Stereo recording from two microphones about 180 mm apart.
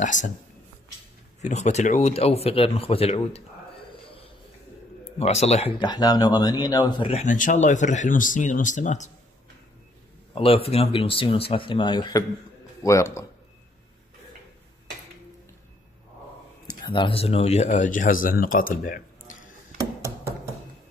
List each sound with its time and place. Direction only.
0.0 s speech: 45° left (ahead or behind)
1.4 s a man's voice: 40° left (ahead or behind)
5.2 s speech: 35° left (ahead or behind)
7.2 s speech: 45° left (ahead or behind)
10.3 s speech: 30° left (ahead or behind); by 13.2 s 15° left (ahead or behind)
16.6 s speech: 25° left (ahead or behind); by 19.5 s 50° left (ahead or behind)